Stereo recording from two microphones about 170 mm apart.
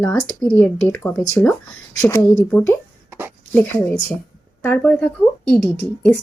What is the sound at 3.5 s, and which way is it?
Speech, 10° left (ahead or behind).